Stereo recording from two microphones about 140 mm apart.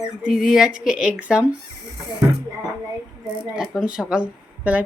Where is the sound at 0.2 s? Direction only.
5° right (ahead or behind).